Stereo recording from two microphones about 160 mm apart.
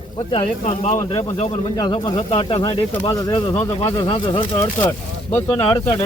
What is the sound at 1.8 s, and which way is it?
Speech, 30° left (ahead or behind).